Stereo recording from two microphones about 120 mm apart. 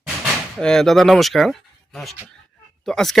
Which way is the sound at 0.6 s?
5° left (ahead or behind).